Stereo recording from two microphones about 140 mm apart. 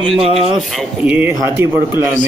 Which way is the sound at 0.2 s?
45° right (ahead or behind).